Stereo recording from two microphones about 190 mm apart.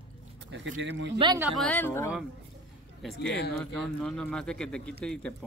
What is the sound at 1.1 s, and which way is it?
Speech, 25° right (ahead or behind).